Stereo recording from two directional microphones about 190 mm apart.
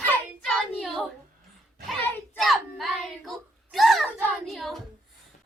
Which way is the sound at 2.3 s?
Centre (ahead or behind).